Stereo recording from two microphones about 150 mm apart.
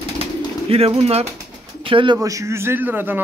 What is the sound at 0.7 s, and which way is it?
A man's voice, 40° right (ahead or behind).